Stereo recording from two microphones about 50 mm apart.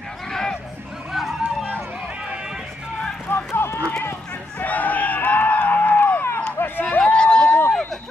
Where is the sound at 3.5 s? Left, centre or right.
Left.